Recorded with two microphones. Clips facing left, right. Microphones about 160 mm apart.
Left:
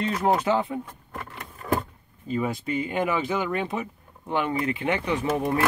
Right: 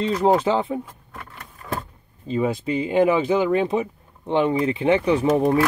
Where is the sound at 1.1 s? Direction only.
20° left (ahead or behind).